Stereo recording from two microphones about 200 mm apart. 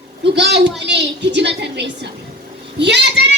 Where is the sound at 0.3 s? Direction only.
55° right (ahead or behind).